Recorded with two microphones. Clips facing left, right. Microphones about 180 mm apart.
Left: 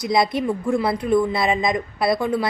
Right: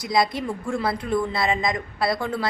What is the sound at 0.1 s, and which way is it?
A woman's voice, 20° left (ahead or behind).